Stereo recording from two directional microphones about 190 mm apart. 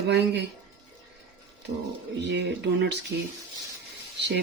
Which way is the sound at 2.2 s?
65° right (ahead or behind).